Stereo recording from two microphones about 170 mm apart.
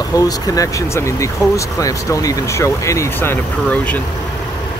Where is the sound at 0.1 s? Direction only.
20° left (ahead or behind).